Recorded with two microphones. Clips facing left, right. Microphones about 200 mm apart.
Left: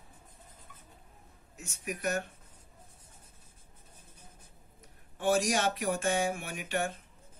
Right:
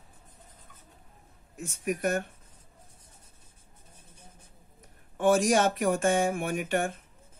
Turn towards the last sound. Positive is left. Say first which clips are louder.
# right 5 dB
turn(degrees=-50)  # may be behind; listen again after turning